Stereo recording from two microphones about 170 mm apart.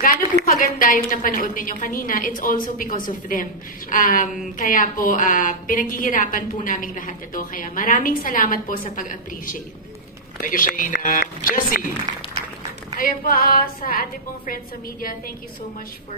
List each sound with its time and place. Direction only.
0.5 s a woman's voice: 60° left (ahead or behind)
12.9 s a woman's voice: 60° left (ahead or behind)